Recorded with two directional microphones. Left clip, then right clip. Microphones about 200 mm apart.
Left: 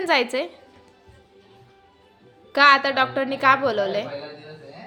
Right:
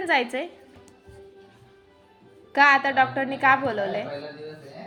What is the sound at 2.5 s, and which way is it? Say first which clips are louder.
A woman's voice: left 2 dB; 25° left (ahead or behind).